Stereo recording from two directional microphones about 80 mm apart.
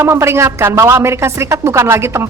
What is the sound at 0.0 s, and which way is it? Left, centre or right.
A woman's voice, right.